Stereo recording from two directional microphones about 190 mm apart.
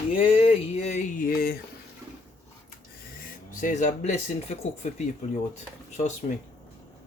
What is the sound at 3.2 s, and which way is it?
Speech, 45° left (ahead or behind).